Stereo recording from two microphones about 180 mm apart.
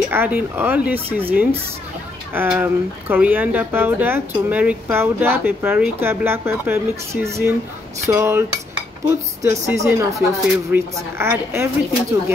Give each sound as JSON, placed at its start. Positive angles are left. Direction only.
{"t": 0.1, "sound": "speech", "side_deg": -10}